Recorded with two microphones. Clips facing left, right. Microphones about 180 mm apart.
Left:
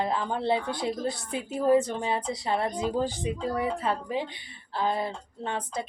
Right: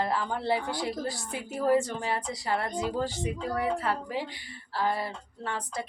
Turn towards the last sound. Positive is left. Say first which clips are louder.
# left 2 dB
turn(degrees=20)  # may be behind; listen again after turning